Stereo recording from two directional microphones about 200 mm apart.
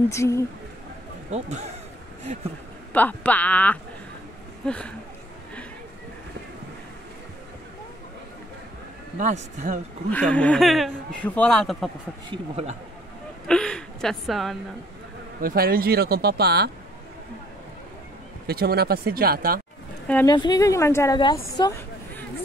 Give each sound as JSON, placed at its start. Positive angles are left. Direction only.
{"t": 0.1, "sound": "speech", "side_deg": 15}
{"t": 1.3, "sound": "speech", "side_deg": -35}
{"t": 2.9, "sound": "speech", "side_deg": 10}
{"t": 9.2, "sound": "speech", "side_deg": -40}
{"t": 10.1, "sound": "speech", "side_deg": 5}
{"t": 12.3, "sound": "speech", "side_deg": -30}
{"t": 13.5, "sound": "a sound", "side_deg": 5}
{"t": 15.4, "sound": "speech", "side_deg": -50}
{"t": 18.5, "sound": "speech", "side_deg": -50}
{"t": 20.2, "sound": "speech", "side_deg": 20}